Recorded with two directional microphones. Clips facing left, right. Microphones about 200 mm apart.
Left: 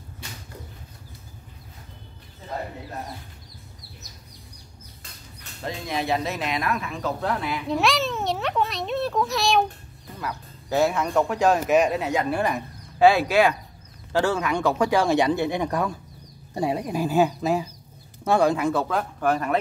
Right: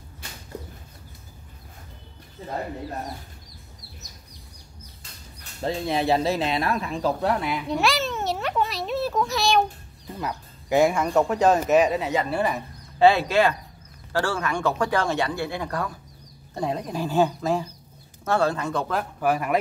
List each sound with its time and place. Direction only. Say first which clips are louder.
5.6 s speech: right 4 dB; 30° right (ahead or behind)
7.4 s a sound: even; centre (ahead or behind)
10.2 s speech: right 1 dB; 15° right (ahead or behind)
11.3 s speech: right 1 dB; 10° left (ahead or behind)
11.7 s speech: right 1 dB; centre (ahead or behind)
12.5 s speech: even; 10° left (ahead or behind); by 19.6 s 10° right (ahead or behind)